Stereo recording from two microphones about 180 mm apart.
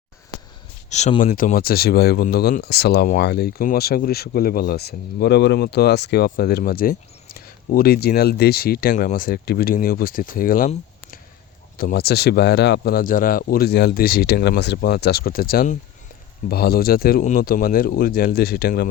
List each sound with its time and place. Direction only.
0.9 s speech: 40° left (ahead or behind)
11.8 s speech: 60° left (ahead or behind)
16.5 s speech: 60° left (ahead or behind)